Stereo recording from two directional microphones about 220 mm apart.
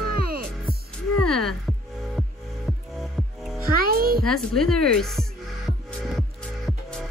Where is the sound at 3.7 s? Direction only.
40° right (ahead or behind).